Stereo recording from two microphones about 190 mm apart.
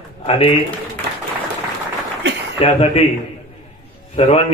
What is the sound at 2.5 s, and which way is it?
Speech, 30° left (ahead or behind).